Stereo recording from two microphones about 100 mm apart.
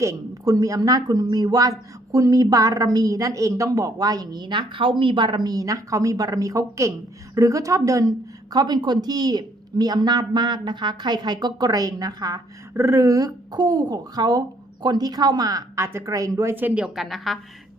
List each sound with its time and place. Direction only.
0.0 s a woman's voice: 35° right (ahead or behind)
12.7 s a woman's voice: 25° right (ahead or behind)
16.8 s a woman's voice: 5° right (ahead or behind)